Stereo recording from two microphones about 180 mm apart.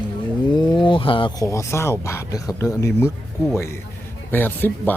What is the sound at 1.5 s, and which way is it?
A man's voice, 15° left (ahead or behind).